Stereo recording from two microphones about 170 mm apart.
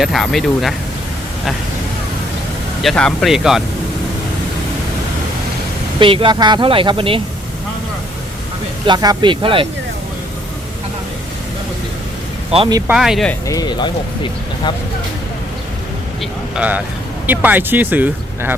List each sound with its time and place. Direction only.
0.0 s speech: centre (ahead or behind)
2.8 s speech: centre (ahead or behind)
6.0 s speech: 30° right (ahead or behind)
8.9 s speech: 25° right (ahead or behind)
12.5 s speech: 30° right (ahead or behind)
12.9 s speech: 5° right (ahead or behind)
13.5 s speech: 25° left (ahead or behind)
16.6 s speech: 10° right (ahead or behind)